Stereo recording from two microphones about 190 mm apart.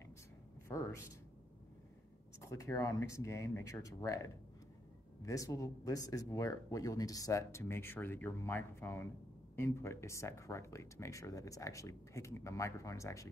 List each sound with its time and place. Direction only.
0.7 s speech: 15° left (ahead or behind)
2.4 s speech: 15° left (ahead or behind)